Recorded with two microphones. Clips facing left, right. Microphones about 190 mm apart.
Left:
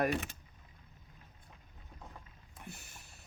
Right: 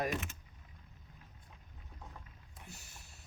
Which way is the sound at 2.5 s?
55° left (ahead or behind).